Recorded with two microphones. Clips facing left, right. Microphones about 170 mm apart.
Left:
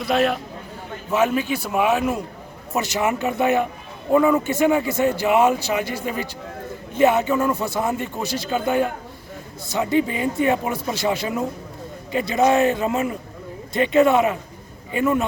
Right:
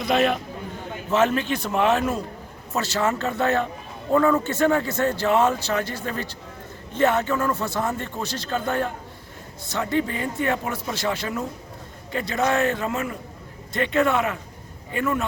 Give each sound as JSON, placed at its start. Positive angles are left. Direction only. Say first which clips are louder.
{"t": 0.0, "sound": "a man's voice", "louder": "left 1 dB", "side_deg": 5}